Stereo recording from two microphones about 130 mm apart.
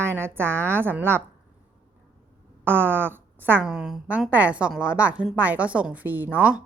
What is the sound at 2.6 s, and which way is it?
A woman's voice, 15° right (ahead or behind).